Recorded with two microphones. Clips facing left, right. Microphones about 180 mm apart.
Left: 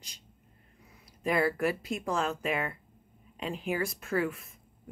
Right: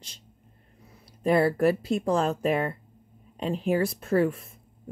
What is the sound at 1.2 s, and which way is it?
Speech, 30° right (ahead or behind).